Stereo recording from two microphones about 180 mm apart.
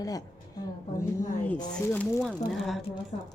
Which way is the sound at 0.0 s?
20° left (ahead or behind).